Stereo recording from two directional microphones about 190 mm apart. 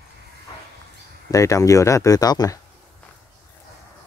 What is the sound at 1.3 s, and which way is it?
Speech, 15° left (ahead or behind).